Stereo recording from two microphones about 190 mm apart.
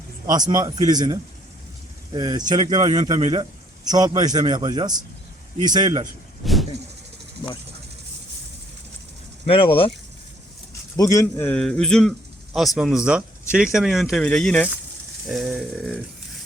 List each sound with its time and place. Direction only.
0.3 s a man's voice: 20° right (ahead or behind)
6.4 s vehicle: centre (ahead or behind)
9.5 s speech: 30° left (ahead or behind)
10.9 s a man's voice: 20° left (ahead or behind); by 16.0 s centre (ahead or behind)